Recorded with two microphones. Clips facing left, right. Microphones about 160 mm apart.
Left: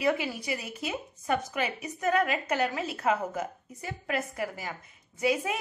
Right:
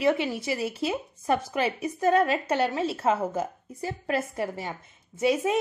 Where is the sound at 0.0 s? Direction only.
25° right (ahead or behind).